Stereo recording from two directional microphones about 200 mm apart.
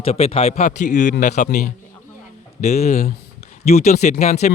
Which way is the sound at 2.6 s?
35° left (ahead or behind).